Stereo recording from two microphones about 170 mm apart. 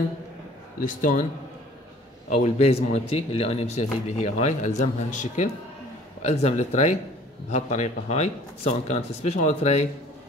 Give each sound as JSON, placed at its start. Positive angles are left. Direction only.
{"t": 0.7, "sound": "a man's voice", "side_deg": 50}
{"t": 2.2, "sound": "a man's voice", "side_deg": 45}